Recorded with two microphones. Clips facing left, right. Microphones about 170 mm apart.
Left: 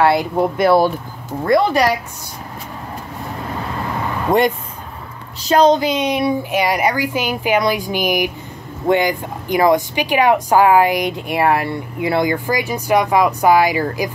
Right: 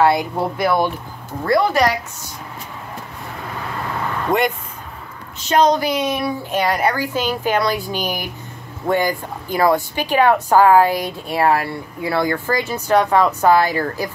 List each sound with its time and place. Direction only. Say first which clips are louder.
0.2 s speech: left 4 dB; 25° left (ahead or behind)
1.4 s speech: left 2 dB; 20° left (ahead or behind)
5.5 s a woman's voice: left 3 dB; 30° left (ahead or behind)